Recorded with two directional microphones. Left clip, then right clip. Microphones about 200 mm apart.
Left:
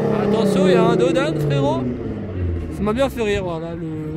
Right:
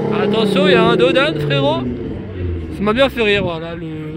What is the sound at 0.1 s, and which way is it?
Speech, centre (ahead or behind).